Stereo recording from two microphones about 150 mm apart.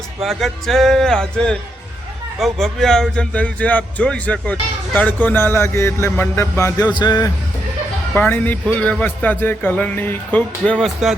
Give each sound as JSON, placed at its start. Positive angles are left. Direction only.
{"t": 0.2, "sound": "speech", "side_deg": 0}
{"t": 8.1, "sound": "speech", "side_deg": 10}